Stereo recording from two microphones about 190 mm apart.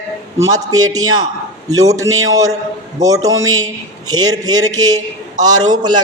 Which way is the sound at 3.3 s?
90° right.